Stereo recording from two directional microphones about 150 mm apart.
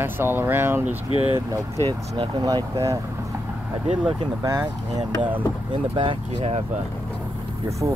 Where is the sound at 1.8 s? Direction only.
30° right (ahead or behind).